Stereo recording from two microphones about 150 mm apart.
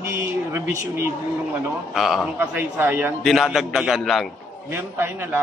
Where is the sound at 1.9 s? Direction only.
Centre (ahead or behind).